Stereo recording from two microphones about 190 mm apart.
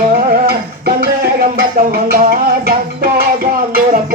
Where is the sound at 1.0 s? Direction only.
50° right (ahead or behind).